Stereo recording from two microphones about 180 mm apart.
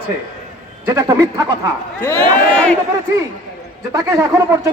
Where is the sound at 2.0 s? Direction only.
10° left (ahead or behind).